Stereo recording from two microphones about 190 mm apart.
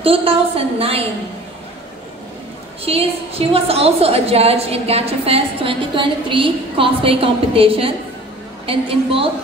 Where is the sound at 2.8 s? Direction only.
30° right (ahead or behind).